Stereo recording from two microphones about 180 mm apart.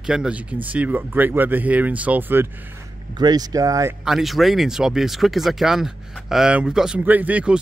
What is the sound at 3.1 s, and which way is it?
Speech, 20° right (ahead or behind).